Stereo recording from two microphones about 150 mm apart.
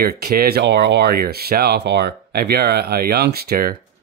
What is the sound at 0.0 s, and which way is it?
Speech, 90° right.